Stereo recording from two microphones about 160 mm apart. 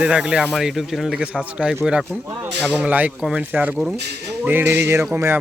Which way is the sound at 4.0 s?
90° right.